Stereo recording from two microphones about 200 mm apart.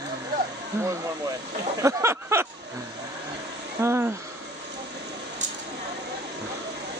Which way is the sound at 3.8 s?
10° right (ahead or behind).